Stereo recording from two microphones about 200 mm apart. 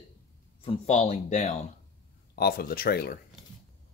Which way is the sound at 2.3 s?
50° left (ahead or behind).